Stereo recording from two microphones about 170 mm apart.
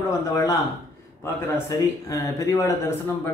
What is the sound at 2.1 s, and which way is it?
Speech, 20° left (ahead or behind).